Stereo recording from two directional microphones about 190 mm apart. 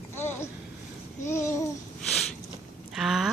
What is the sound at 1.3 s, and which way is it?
Babbling, 15° left (ahead or behind).